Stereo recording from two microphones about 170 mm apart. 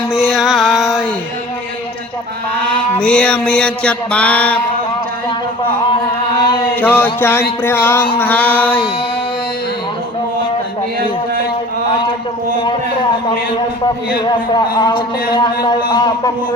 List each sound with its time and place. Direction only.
0.1 s music: 5° right (ahead or behind)
3.0 s mantra: 5° left (ahead or behind)
6.7 s mantra: 10° left (ahead or behind)
14.8 s speech: 25° left (ahead or behind)